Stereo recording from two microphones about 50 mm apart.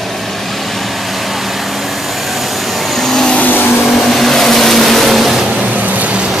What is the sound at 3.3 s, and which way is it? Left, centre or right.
Vehicle, left.